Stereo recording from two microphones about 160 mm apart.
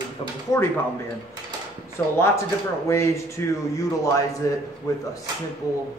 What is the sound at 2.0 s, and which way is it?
A man's voice, 15° left (ahead or behind).